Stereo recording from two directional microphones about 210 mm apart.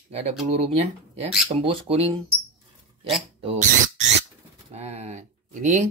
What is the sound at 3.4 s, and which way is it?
Speech, 30° right (ahead or behind).